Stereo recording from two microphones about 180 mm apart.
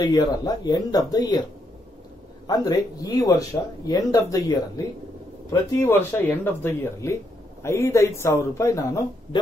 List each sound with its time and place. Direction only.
0.0 s speech: 20° left (ahead or behind)
2.4 s speech: 20° left (ahead or behind)